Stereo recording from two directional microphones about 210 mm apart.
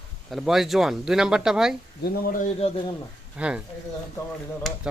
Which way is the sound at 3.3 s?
5° right (ahead or behind).